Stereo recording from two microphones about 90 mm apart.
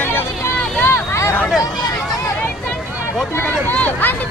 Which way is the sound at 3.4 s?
15° left (ahead or behind).